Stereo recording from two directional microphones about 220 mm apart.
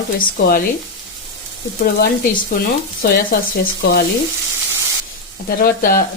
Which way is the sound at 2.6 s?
40° left (ahead or behind).